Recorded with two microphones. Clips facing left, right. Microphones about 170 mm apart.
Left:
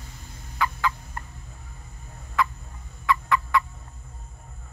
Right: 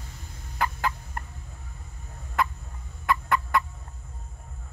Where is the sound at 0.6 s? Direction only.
45° right (ahead or behind).